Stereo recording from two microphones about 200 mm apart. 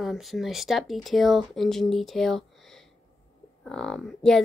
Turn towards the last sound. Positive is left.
turn(degrees=5)  # may be behind; listen again after turning